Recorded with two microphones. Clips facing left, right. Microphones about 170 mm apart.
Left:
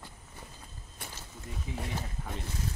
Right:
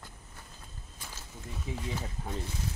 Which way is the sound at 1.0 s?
60° left (ahead or behind).